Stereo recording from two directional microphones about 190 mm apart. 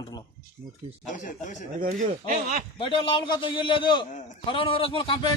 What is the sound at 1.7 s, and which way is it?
Speech, 45° right (ahead or behind).